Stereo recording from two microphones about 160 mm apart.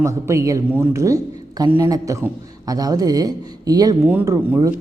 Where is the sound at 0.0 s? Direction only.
20° right (ahead or behind).